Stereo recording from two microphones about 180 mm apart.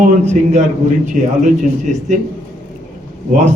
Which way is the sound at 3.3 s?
40° right (ahead or behind).